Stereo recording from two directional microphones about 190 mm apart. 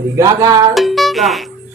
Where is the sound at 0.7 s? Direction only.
Centre (ahead or behind).